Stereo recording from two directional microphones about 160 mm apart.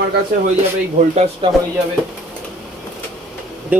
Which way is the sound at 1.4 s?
35° right (ahead or behind).